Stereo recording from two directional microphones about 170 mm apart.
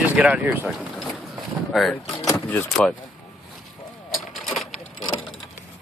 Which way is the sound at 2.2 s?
15° left (ahead or behind).